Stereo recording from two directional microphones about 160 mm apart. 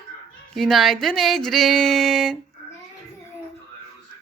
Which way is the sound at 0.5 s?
Centre (ahead or behind).